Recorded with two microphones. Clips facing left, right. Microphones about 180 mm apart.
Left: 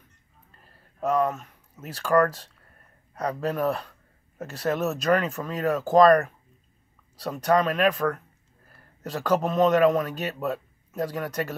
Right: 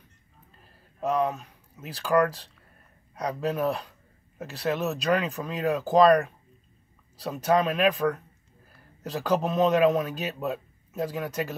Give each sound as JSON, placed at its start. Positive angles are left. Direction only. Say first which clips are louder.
{"t": 1.0, "sound": "a man's voice", "louder": "left 2 dB", "side_deg": 0}
{"t": 2.1, "sound": "speech", "louder": "left 2 dB", "side_deg": -10}
{"t": 3.4, "sound": "a man's voice", "louder": "even", "side_deg": 0}